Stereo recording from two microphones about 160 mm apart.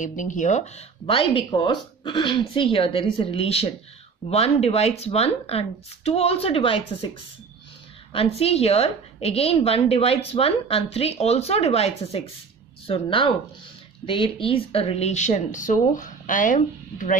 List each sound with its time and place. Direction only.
0.0 s a woman's voice: 50° left (ahead or behind); by 7.1 s 35° left (ahead or behind)
8.1 s a woman's voice: 40° left (ahead or behind); by 17.2 s 55° left (ahead or behind)